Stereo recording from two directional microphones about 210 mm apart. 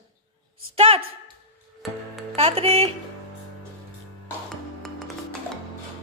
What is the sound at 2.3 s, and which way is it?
Speech, 30° right (ahead or behind).